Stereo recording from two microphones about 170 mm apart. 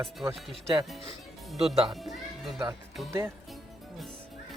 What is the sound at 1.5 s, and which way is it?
Speech, centre (ahead or behind).